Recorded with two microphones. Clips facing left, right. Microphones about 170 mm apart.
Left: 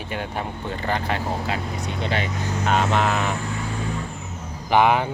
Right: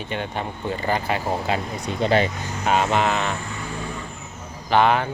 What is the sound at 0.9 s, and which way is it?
Speech, 5° right (ahead or behind).